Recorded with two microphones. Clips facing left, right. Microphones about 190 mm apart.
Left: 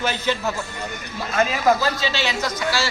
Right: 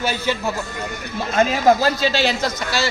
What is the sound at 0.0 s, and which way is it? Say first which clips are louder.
Speech: right 1 dB; 10° right (ahead or behind).